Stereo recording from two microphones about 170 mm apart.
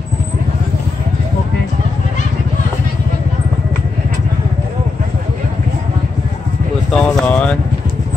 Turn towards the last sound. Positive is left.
turn(degrees=5)  # may be behind; listen again after turning